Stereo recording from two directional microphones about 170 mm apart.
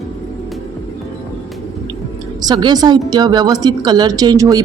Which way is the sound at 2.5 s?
25° right (ahead or behind).